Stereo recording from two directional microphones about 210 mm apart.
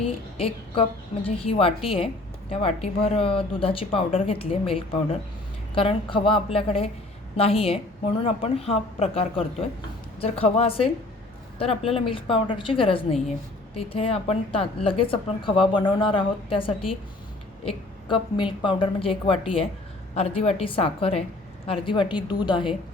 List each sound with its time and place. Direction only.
0.0 s a woman's voice: 25° left (ahead or behind)